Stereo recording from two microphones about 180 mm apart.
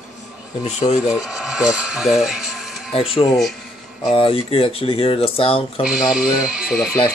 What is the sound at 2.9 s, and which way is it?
Speech, 30° left (ahead or behind).